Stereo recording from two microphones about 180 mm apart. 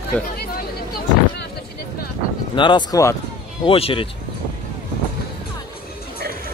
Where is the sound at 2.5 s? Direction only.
25° left (ahead or behind).